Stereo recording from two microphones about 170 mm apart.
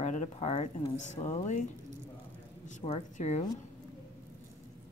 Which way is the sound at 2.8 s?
40° left (ahead or behind).